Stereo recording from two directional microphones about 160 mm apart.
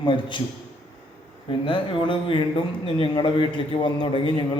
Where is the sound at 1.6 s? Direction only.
30° left (ahead or behind).